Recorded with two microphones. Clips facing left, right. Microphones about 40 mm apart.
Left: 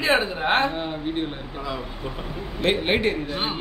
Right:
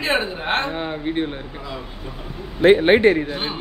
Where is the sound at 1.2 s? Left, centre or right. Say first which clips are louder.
Right 1 dB; centre.